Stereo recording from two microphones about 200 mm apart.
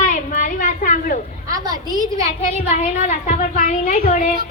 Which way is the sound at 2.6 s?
35° left (ahead or behind).